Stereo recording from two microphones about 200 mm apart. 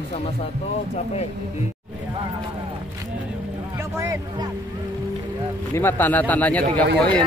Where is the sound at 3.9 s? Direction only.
15° right (ahead or behind).